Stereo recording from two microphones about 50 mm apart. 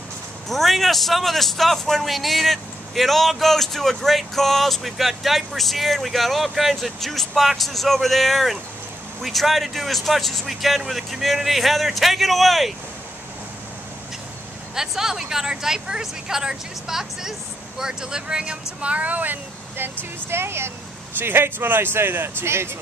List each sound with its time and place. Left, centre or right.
0.5 s a man's voice: centre
14.8 s a woman's voice: centre; by 19.4 s right
19.8 s speech: right